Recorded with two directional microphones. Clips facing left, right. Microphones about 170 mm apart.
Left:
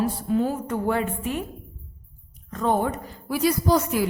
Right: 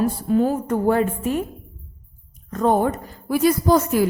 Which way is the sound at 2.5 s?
45° right (ahead or behind).